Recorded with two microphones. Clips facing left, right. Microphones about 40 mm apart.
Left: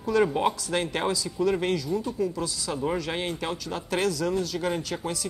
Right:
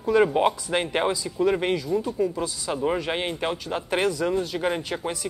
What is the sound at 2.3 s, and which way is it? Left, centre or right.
A woman's voice, right.